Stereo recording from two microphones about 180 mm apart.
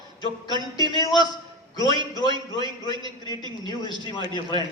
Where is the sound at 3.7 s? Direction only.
25° left (ahead or behind).